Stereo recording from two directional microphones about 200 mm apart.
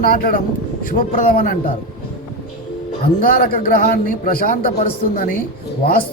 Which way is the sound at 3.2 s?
45° left (ahead or behind).